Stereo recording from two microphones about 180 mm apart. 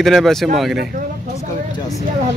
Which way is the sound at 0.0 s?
Centre (ahead or behind).